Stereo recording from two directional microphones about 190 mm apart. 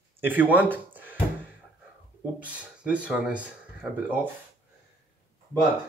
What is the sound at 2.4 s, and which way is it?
Speech, 5° right (ahead or behind).